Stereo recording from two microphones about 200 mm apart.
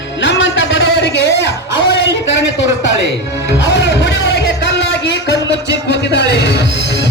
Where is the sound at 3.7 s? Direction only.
65° left (ahead or behind).